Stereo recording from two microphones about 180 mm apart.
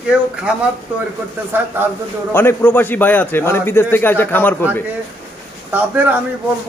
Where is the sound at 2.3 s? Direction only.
10° left (ahead or behind).